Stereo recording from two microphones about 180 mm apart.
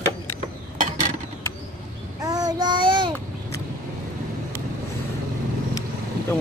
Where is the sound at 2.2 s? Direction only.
20° right (ahead or behind).